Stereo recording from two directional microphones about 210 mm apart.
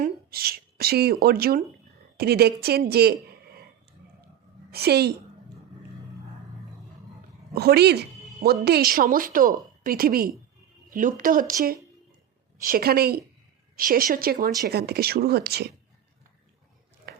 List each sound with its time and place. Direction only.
0.0 s speech: 45° right (ahead or behind)
4.7 s a woman's voice: 50° right (ahead or behind)
7.5 s a woman's voice: 50° right (ahead or behind)
12.6 s a woman's voice: 45° right (ahead or behind)
17.1 s a sound: 50° right (ahead or behind)